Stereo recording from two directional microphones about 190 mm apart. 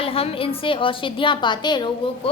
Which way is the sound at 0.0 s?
30° left (ahead or behind).